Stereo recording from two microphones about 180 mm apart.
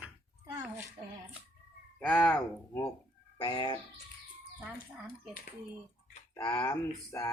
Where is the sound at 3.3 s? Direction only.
25° left (ahead or behind).